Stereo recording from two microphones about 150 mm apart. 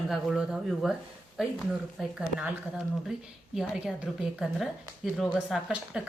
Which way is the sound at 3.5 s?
5° right (ahead or behind).